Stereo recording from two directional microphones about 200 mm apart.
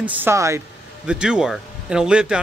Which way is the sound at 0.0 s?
10° right (ahead or behind).